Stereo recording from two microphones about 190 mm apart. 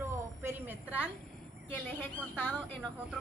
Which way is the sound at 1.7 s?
10° left (ahead or behind).